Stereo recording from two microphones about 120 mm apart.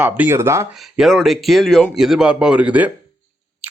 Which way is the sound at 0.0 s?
20° right (ahead or behind).